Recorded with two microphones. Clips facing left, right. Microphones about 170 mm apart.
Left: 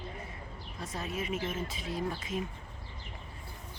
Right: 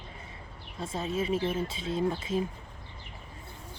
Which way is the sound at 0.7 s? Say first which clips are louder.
Right 6 dB; 25° right (ahead or behind).